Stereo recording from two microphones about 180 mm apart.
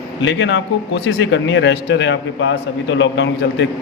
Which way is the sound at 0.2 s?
90° left.